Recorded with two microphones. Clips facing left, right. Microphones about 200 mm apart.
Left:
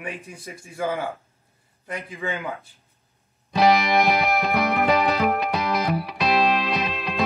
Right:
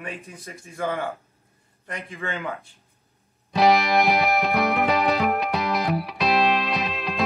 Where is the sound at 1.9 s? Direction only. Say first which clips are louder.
Left 2 dB; 5° left (ahead or behind).